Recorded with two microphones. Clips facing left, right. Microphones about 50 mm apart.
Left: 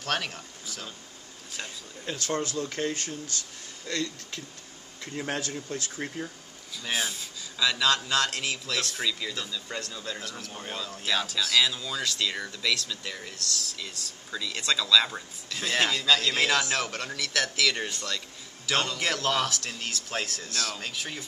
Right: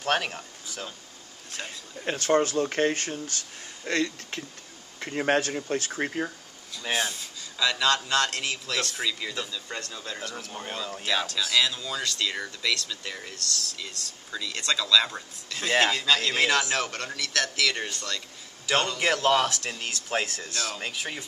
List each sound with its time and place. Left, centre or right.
0.0 s speech: centre
2.0 s speech: right
6.8 s a man's voice: centre
15.6 s a man's voice: centre